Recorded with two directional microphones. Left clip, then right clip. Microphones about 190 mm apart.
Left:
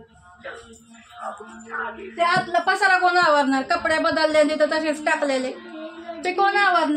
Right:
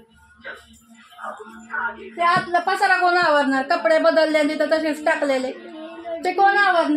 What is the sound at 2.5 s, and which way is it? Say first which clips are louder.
A woman's voice: even; 45° right (ahead or behind).